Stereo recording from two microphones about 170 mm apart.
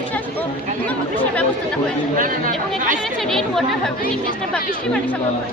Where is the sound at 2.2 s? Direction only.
55° right (ahead or behind).